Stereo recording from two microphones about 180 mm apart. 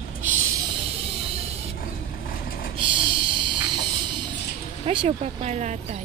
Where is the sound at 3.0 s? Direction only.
30° right (ahead or behind).